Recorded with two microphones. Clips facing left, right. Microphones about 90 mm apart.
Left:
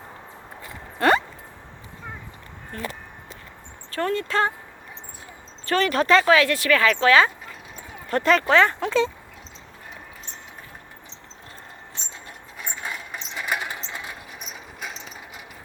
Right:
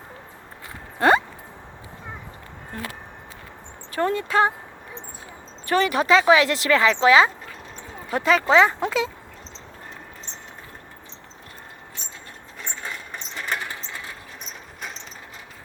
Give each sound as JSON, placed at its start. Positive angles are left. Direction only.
{"t": 0.9, "sound": "a sound", "side_deg": -15}
{"t": 2.7, "sound": "speech", "side_deg": -20}
{"t": 3.9, "sound": "speech", "side_deg": -15}
{"t": 5.8, "sound": "speech", "side_deg": -10}
{"t": 6.2, "sound": "speech", "side_deg": -20}
{"t": 8.1, "sound": "speech", "side_deg": -5}
{"t": 8.4, "sound": "speech", "side_deg": -15}
{"t": 12.6, "sound": "a sound", "side_deg": 10}
{"t": 14.4, "sound": "a sound", "side_deg": 5}